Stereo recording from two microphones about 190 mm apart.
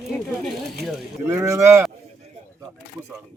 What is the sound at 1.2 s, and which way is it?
Speech, 15° right (ahead or behind).